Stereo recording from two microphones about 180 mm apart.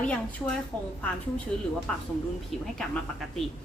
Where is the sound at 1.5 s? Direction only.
5° left (ahead or behind).